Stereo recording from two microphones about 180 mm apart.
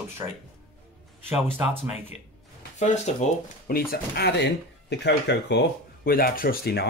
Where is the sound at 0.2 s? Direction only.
25° right (ahead or behind).